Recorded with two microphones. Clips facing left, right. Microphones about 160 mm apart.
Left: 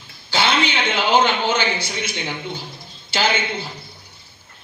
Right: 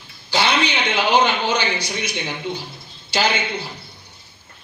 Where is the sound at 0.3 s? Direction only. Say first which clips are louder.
Even; 15° right (ahead or behind).